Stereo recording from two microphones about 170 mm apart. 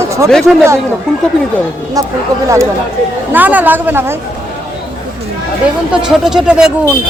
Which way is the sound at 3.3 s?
10° right (ahead or behind).